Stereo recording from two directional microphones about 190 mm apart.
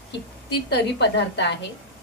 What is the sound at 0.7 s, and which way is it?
Speech, 65° left (ahead or behind).